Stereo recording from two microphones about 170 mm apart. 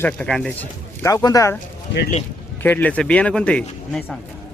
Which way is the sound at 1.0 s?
15° left (ahead or behind).